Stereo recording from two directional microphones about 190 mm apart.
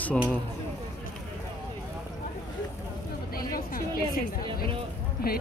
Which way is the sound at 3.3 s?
50° left (ahead or behind).